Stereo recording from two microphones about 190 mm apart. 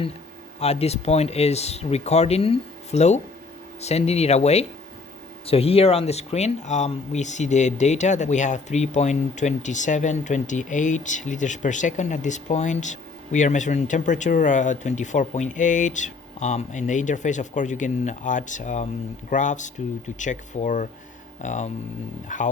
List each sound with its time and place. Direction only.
0.6 s speech: 35° left (ahead or behind)